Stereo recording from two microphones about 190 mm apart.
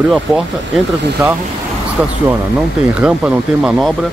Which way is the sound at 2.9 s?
5° right (ahead or behind).